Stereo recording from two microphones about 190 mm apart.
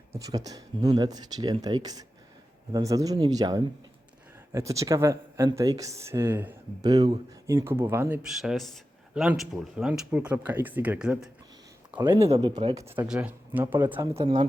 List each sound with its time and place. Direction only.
0.1 s speech: 20° right (ahead or behind)
6.8 s speech: 20° right (ahead or behind)
8.3 s speech: centre (ahead or behind)
11.9 s speech: 20° right (ahead or behind)
14.1 s speech: 30° right (ahead or behind)